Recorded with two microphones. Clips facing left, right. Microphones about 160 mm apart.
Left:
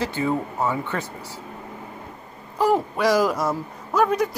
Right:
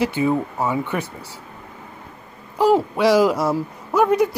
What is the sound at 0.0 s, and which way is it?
Speech, 15° right (ahead or behind).